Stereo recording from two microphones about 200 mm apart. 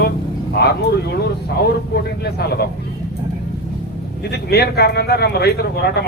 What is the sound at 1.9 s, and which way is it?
Speech, 55° left (ahead or behind).